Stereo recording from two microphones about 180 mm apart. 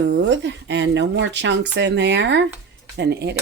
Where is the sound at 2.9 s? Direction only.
65° right (ahead or behind).